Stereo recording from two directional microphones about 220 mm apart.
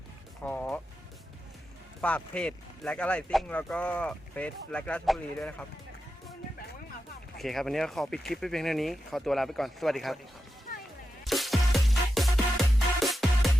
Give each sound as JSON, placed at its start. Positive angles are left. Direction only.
{"t": 0.4, "sound": "music", "side_deg": 5}
{"t": 2.0, "sound": "speech", "side_deg": 5}
{"t": 7.3, "sound": "speech", "side_deg": 0}
{"t": 10.7, "sound": "music", "side_deg": 40}
{"t": 11.3, "sound": "music", "side_deg": 0}